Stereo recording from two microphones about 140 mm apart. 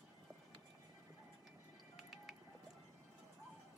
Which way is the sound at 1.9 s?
Centre (ahead or behind).